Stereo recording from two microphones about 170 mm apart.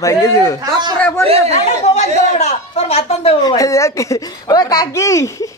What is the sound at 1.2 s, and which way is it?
Speech, 35° right (ahead or behind).